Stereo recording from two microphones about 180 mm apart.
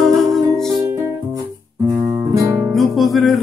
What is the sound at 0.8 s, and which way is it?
Music, 15° right (ahead or behind).